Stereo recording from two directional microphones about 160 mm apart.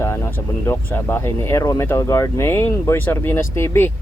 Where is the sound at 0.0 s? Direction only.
15° left (ahead or behind).